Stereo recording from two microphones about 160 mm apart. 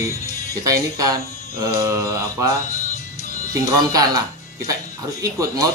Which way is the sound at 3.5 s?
20° right (ahead or behind).